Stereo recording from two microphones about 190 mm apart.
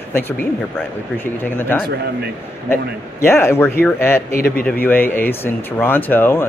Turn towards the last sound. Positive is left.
turn(degrees=10)  # may be behind; listen again after turning